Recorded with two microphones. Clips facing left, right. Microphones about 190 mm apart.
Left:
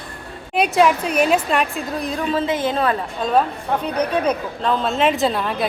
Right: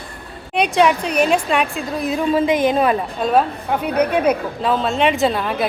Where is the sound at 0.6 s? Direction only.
5° left (ahead or behind).